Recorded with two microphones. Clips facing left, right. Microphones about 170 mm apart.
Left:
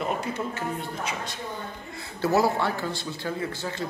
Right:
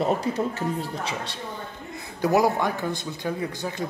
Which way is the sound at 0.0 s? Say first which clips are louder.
Right 5 dB; 35° right (ahead or behind).